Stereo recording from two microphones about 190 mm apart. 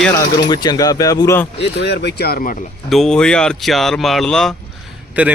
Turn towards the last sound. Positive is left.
turn(degrees=-10)  # may be behind; listen again after turning